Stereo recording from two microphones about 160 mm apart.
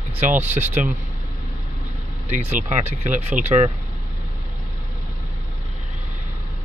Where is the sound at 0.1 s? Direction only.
45° right (ahead or behind).